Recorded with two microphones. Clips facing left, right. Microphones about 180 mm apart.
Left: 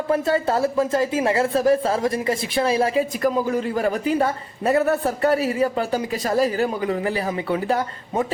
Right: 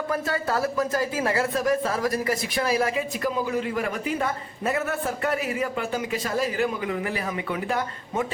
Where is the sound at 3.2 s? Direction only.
40° left (ahead or behind).